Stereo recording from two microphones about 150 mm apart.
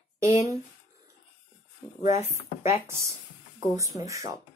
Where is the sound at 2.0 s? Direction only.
50° left (ahead or behind).